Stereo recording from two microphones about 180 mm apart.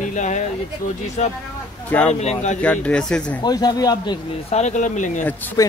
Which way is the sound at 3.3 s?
20° left (ahead or behind).